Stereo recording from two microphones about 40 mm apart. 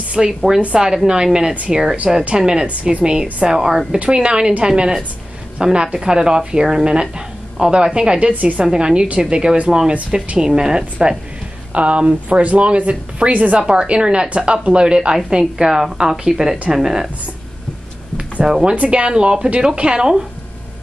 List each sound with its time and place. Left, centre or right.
0.2 s a woman's voice: centre
2.6 s a woman's voice: right; by 3.8 s centre
4.0 s a woman's voice: right
8.3 s speech: right
8.7 s a woman's voice: right
11.7 s speech: right
13.6 s a woman's voice: right
15.5 s speech: centre
18.4 s speech: centre
18.8 s a woman's voice: right